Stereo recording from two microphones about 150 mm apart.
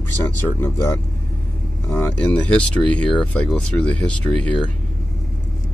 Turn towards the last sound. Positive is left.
turn(degrees=5)  # may be behind; listen again after turning